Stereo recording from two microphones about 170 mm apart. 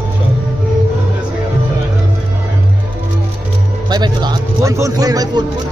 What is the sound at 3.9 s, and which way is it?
A man's voice, 25° right (ahead or behind).